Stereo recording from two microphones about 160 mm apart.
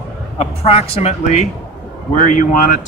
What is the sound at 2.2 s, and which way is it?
Speech, 55° left (ahead or behind).